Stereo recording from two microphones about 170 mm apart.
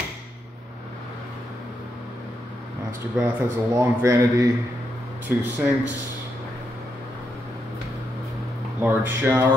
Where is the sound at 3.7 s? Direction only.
15° right (ahead or behind).